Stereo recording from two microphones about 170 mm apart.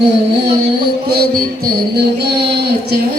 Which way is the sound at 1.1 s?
65° right (ahead or behind).